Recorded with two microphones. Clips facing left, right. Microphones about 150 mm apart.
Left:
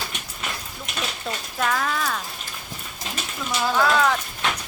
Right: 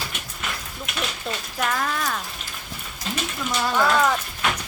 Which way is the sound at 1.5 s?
5° right (ahead or behind).